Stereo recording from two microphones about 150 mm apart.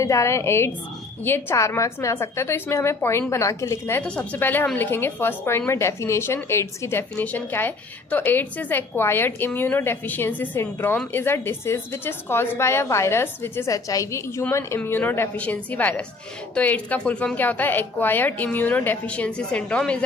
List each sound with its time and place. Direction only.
0.0 s a woman's voice: 20° left (ahead or behind)